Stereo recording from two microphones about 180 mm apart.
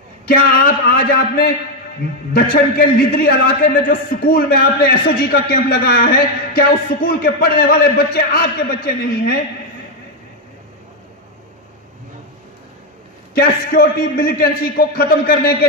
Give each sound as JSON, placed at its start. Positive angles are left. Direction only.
{"t": 0.3, "sound": "a man's voice", "side_deg": 55}
{"t": 13.3, "sound": "a man's voice", "side_deg": 60}